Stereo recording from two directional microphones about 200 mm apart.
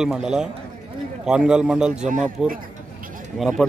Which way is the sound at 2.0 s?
40° right (ahead or behind).